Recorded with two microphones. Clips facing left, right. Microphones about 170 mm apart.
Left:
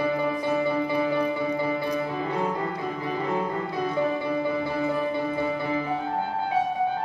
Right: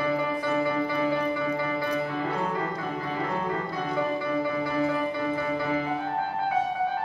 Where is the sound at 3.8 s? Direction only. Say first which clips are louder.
Left 3 dB; 5° left (ahead or behind).